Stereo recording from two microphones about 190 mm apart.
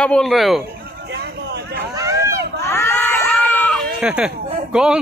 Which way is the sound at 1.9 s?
15° right (ahead or behind).